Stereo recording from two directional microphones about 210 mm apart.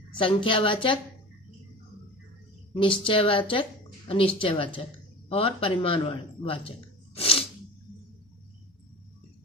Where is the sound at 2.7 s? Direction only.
25° left (ahead or behind).